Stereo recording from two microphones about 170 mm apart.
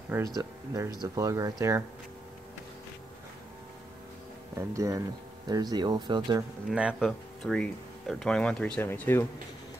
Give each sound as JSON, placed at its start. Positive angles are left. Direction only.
{"t": 0.1, "sound": "speech", "side_deg": -20}
{"t": 4.6, "sound": "speech", "side_deg": -20}
{"t": 6.7, "sound": "speech", "side_deg": -5}